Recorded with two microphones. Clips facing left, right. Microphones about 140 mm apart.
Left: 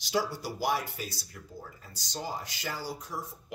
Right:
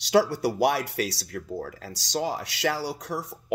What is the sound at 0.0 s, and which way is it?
Speech, 70° right (ahead or behind).